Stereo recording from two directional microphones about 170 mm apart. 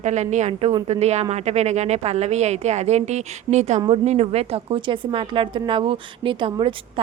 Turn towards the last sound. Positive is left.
turn(degrees=-30)  # may be behind; listen again after turning